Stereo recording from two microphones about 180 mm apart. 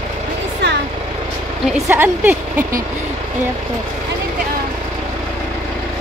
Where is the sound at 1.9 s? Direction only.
10° right (ahead or behind).